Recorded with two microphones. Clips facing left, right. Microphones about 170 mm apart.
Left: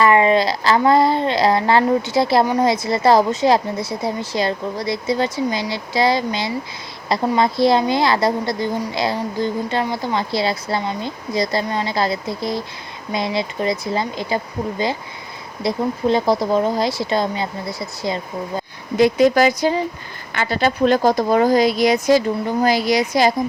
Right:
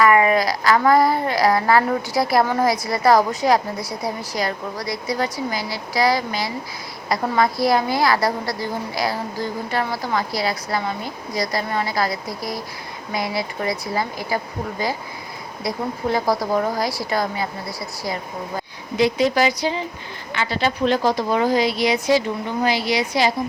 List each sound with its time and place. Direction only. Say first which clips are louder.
0.0 s child singing: left 2 dB; 25° left (ahead or behind)
18.9 s a woman's voice: left 4 dB; 50° left (ahead or behind)